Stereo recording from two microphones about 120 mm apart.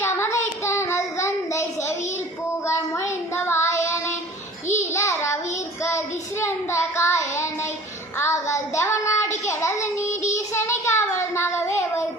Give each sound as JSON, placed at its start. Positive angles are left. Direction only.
{"t": 0.0, "sound": "child singing", "side_deg": 20}
{"t": 3.1, "sound": "child singing", "side_deg": 20}
{"t": 6.4, "sound": "child singing", "side_deg": 25}